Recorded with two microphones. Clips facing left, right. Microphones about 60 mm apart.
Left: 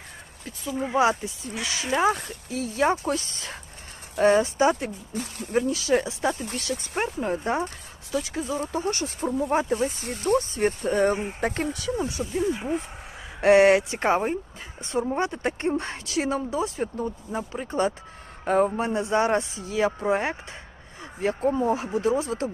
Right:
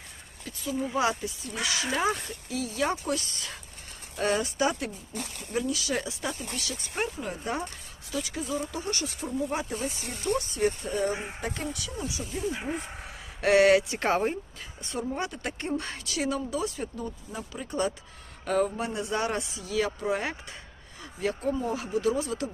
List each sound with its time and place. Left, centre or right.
0.4 s speech: left
1.9 s speech: centre
2.5 s speech: left
10.7 s speech: left
11.7 s speech: left
13.4 s speech: left